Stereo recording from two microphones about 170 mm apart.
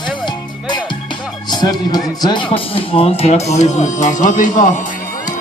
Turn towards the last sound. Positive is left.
turn(degrees=50)  # may be behind; listen again after turning